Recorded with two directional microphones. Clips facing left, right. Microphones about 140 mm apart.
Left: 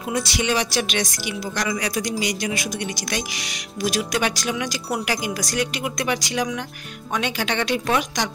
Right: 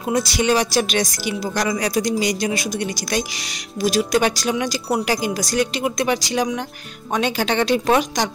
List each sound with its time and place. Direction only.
0.1 s speech: 40° right (ahead or behind)
3.8 s speech: 30° right (ahead or behind)